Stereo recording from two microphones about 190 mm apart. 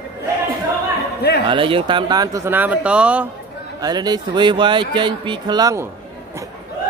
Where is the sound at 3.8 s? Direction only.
20° right (ahead or behind).